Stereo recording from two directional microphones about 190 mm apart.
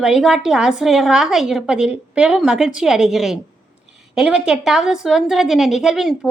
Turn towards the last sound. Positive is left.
turn(degrees=0)  # may be behind; listen again after turning